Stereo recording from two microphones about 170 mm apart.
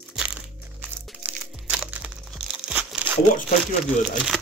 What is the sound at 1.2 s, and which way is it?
Music, 5° right (ahead or behind).